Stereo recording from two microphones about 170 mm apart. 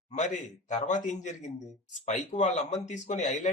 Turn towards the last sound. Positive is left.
turn(degrees=40)  # may be behind; listen again after turning